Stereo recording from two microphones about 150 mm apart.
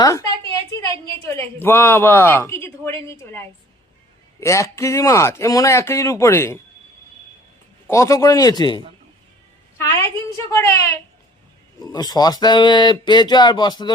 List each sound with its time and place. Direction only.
0.0 s a woman's voice: 20° left (ahead or behind)
7.9 s speech: 20° left (ahead or behind)
9.7 s speech: 15° left (ahead or behind)
11.8 s speech: 25° left (ahead or behind)